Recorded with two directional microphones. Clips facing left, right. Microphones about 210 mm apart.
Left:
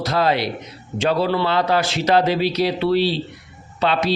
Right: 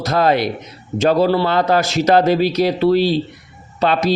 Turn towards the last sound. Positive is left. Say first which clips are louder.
# right 3 dB
turn(degrees=-45)  # may be behind; listen again after turning